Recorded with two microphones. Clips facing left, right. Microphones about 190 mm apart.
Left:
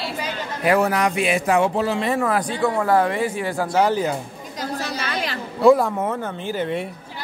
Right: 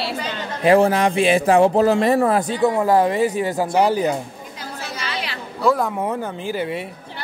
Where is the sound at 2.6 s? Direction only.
20° right (ahead or behind).